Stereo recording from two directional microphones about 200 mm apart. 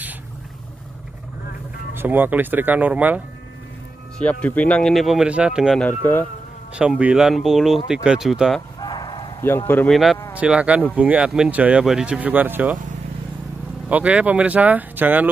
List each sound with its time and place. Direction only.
2.0 s speech: 10° right (ahead or behind)
4.2 s speech: 5° left (ahead or behind)
5.9 s speech: 10° left (ahead or behind)
6.8 s speech: 5° right (ahead or behind)
8.7 s bow-wow: 20° left (ahead or behind)
9.4 s speech: 10° left (ahead or behind)
10.3 s speech: 5° right (ahead or behind)
13.8 s speech: 5° right (ahead or behind)